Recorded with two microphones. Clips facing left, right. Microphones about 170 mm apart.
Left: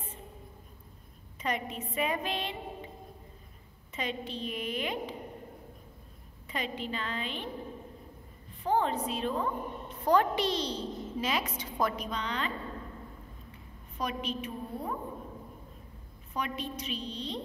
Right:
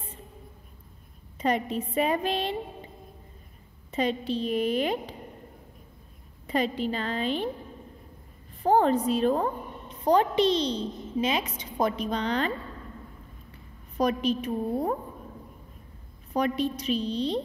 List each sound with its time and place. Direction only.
1.4 s a woman's voice: 35° right (ahead or behind)
3.9 s a woman's voice: 35° right (ahead or behind)
6.4 s a woman's voice: 35° right (ahead or behind)
8.6 s a woman's voice: 40° right (ahead or behind)
10.0 s a woman's voice: 20° right (ahead or behind)
12.1 s a woman's voice: 35° right (ahead or behind)
13.9 s a woman's voice: 40° right (ahead or behind)
16.3 s a woman's voice: 35° right (ahead or behind)